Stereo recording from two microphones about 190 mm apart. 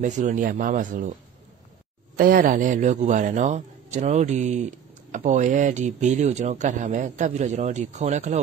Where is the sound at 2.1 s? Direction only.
45° right (ahead or behind).